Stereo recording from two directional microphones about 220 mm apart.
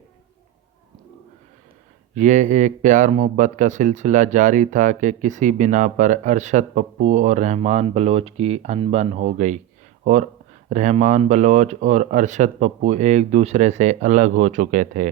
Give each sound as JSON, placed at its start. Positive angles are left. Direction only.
{"t": 2.1, "sound": "a man's voice", "side_deg": -35}
{"t": 10.7, "sound": "a man's voice", "side_deg": -35}